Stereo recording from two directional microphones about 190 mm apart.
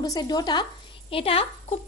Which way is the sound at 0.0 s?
20° left (ahead or behind).